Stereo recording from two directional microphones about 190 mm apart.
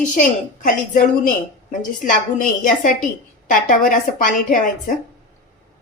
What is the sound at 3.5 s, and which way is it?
A woman's voice, 45° left (ahead or behind).